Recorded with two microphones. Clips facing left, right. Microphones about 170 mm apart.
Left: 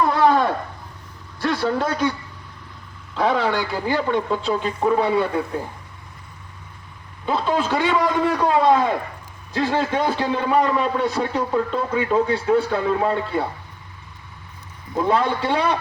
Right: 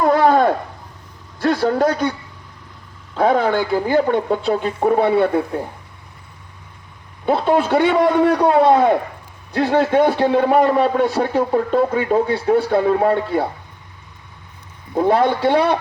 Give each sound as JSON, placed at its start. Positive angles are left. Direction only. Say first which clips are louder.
{"t": 0.0, "sound": "a sound", "louder": "right 4 dB", "side_deg": -50}
{"t": 1.4, "sound": "a man's voice", "louder": "right 5 dB", "side_deg": -45}
{"t": 3.2, "sound": "a man's voice", "louder": "right 4 dB", "side_deg": -50}
{"t": 7.3, "sound": "a man's voice", "louder": "right 5 dB", "side_deg": -55}
{"t": 12.5, "sound": "a man's voice", "louder": "right 4 dB", "side_deg": -60}
{"t": 15.0, "sound": "a man's voice", "louder": "right 5 dB", "side_deg": -60}